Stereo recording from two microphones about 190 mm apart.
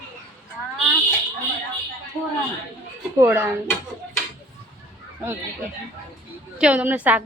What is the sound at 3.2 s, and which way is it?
Speech, 10° right (ahead or behind).